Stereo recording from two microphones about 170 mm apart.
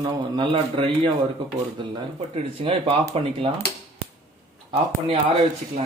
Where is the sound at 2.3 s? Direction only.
30° right (ahead or behind).